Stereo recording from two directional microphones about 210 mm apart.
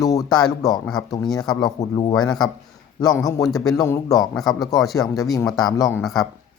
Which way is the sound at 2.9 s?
15° left (ahead or behind).